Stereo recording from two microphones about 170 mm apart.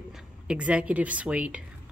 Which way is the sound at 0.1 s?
5° right (ahead or behind).